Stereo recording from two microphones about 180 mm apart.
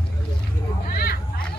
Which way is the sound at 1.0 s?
55° left (ahead or behind).